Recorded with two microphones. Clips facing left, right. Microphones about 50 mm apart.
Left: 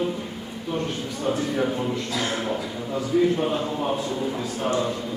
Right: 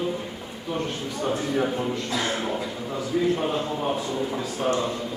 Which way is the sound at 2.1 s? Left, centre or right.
Right.